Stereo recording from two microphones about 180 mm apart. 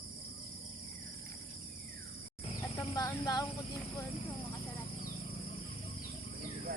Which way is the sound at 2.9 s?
20° left (ahead or behind).